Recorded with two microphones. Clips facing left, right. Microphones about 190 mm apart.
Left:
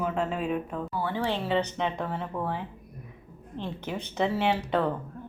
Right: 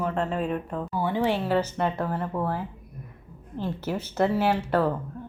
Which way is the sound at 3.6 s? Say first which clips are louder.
Right 4 dB; 5° right (ahead or behind).